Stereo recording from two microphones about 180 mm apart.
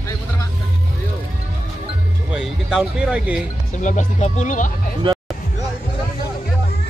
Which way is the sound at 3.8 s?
45° left (ahead or behind).